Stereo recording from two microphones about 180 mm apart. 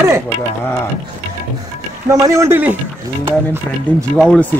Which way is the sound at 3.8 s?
5° left (ahead or behind).